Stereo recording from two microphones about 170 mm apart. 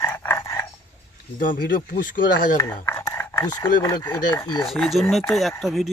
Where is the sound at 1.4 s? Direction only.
55° left (ahead or behind).